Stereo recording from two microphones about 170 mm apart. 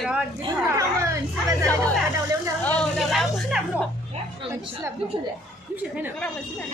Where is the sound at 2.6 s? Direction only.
5° left (ahead or behind).